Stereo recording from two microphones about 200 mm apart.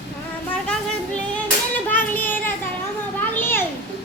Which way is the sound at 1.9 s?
10° left (ahead or behind).